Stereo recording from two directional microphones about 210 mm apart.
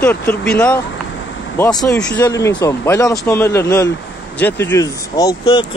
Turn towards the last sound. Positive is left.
turn(degrees=20)  # may be behind; listen again after turning